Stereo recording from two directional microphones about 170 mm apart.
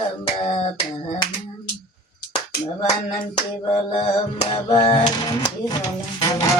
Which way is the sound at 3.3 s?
35° left (ahead or behind).